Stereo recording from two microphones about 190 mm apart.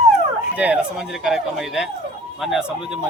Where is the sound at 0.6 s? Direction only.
5° right (ahead or behind).